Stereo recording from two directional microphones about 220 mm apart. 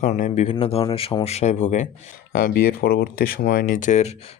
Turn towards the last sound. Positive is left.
turn(degrees=30)  # may be behind; listen again after turning